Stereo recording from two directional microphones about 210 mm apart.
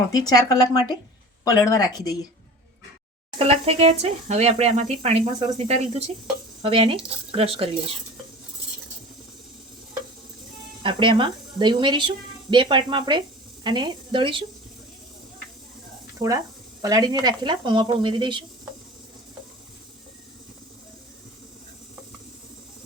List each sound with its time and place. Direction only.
0.1 s speech: 20° left (ahead or behind)
3.3 s speech: 30° right (ahead or behind)
10.8 s speech: 25° right (ahead or behind)
16.1 s speech: 15° right (ahead or behind)